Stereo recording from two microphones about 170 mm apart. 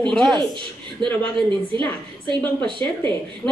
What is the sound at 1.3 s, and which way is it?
A woman's voice, 30° right (ahead or behind).